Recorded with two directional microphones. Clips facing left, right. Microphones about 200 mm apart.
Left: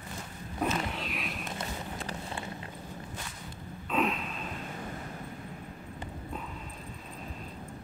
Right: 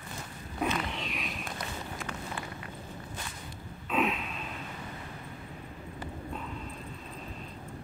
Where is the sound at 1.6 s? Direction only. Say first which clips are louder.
Left 1 dB; 30° left (ahead or behind).